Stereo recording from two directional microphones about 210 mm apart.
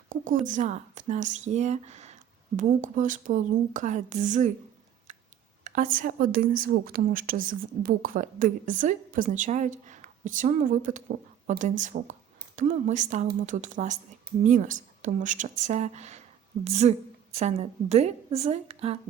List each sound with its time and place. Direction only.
0.4 s a woman's voice: 35° right (ahead or behind)
5.6 s a woman's voice: 40° right (ahead or behind)